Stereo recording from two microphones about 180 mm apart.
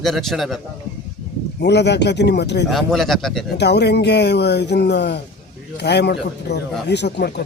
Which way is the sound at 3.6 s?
70° left (ahead or behind).